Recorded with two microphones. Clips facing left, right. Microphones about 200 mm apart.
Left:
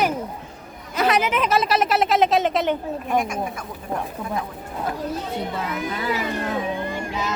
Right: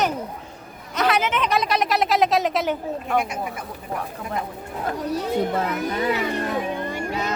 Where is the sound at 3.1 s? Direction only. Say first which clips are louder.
Left 1 dB; 15° left (ahead or behind).